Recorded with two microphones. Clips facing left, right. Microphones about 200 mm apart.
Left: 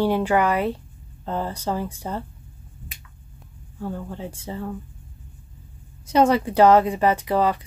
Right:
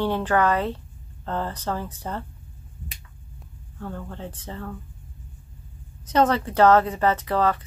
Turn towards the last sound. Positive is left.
turn(degrees=10)  # may be behind; listen again after turning